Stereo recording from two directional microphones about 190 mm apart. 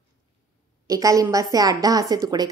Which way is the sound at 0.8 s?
20° right (ahead or behind).